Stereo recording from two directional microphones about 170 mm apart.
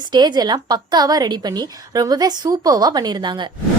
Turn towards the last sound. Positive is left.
turn(degrees=-25)  # may be behind; listen again after turning